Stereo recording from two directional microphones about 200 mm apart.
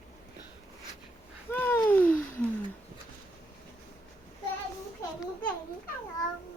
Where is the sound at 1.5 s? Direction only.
10° left (ahead or behind).